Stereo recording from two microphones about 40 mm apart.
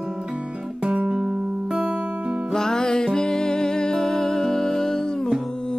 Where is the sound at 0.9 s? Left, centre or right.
Right.